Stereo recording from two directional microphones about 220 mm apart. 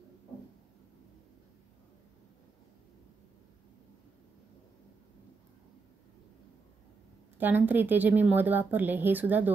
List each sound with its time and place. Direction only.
7.3 s a woman's voice: 10° right (ahead or behind)